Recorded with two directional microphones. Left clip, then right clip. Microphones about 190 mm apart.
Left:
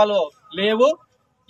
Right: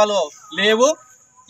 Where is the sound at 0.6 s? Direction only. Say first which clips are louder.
Right 2 dB; 25° left (ahead or behind).